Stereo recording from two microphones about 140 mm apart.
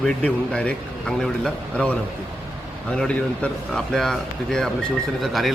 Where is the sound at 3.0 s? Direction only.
5° left (ahead or behind).